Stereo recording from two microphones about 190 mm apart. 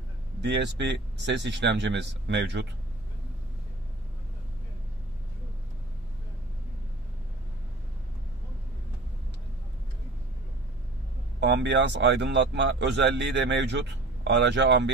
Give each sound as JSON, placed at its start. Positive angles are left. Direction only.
{"t": 0.4, "sound": "speech", "side_deg": -65}
{"t": 11.3, "sound": "speech", "side_deg": -65}